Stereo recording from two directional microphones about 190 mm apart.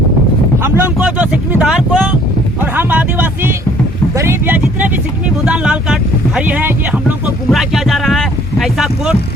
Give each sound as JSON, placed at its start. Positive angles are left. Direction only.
{"t": 0.6, "sound": "speech", "side_deg": -10}
{"t": 2.7, "sound": "music", "side_deg": -10}
{"t": 4.2, "sound": "vehicle", "side_deg": -10}
{"t": 5.5, "sound": "speech", "side_deg": -5}